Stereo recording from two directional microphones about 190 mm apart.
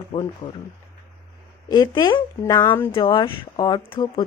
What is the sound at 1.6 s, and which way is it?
Speech, 20° left (ahead or behind).